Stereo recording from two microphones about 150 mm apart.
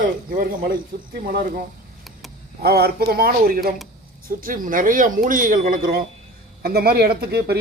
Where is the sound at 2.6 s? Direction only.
90° right.